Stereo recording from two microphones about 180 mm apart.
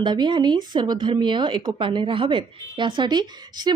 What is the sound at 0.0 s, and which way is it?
Speech, 25° right (ahead or behind).